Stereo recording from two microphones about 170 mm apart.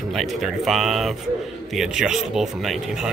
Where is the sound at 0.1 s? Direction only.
Centre (ahead or behind).